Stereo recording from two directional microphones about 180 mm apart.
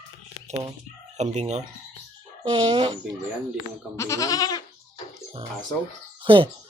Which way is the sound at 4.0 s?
15° left (ahead or behind).